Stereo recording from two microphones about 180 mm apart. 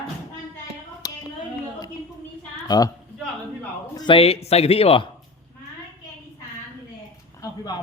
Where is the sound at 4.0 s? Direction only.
30° left (ahead or behind).